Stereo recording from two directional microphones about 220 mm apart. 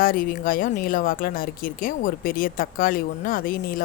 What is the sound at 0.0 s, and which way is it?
Speech, 40° left (ahead or behind).